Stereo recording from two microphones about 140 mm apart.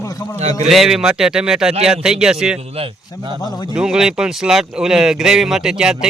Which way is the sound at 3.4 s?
30° left (ahead or behind).